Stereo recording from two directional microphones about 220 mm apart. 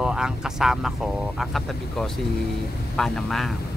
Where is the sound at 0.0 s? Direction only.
5° right (ahead or behind).